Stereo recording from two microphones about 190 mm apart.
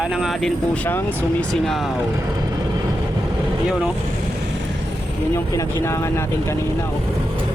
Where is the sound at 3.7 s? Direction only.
5° right (ahead or behind).